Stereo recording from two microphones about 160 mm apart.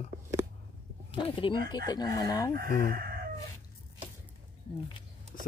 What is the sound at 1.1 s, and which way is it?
Speech, 35° left (ahead or behind).